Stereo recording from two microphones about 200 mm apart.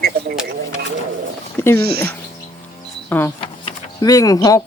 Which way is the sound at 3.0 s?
10° left (ahead or behind).